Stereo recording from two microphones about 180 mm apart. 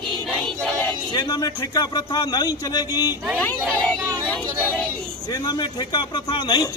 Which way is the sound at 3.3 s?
10° left (ahead or behind).